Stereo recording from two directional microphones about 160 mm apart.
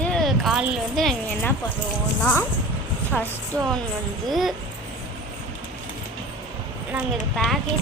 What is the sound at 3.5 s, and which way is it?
Speech, 20° right (ahead or behind).